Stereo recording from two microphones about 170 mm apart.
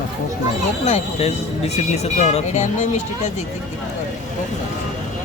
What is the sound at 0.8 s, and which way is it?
Speech, 40° left (ahead or behind).